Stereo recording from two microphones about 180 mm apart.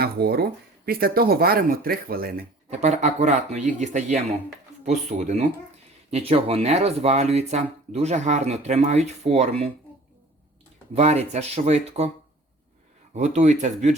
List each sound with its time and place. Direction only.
0.0 s speech: 60° right (ahead or behind)
2.6 s speech: 40° right (ahead or behind)
10.9 s speech: 35° right (ahead or behind)
13.1 s speech: 40° right (ahead or behind)